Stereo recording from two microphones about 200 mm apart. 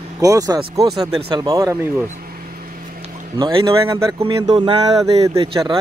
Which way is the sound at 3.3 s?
20° right (ahead or behind).